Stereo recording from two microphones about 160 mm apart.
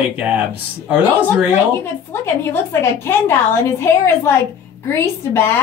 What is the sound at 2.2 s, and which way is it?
A woman's voice, 15° left (ahead or behind).